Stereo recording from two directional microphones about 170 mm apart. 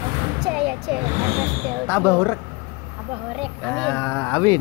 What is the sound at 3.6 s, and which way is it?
Speech, 10° left (ahead or behind).